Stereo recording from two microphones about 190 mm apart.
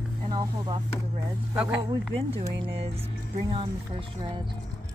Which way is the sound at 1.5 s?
10° right (ahead or behind).